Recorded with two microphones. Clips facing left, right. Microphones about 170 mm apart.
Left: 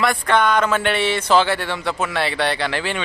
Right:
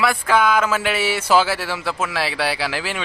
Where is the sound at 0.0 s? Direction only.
5° right (ahead or behind).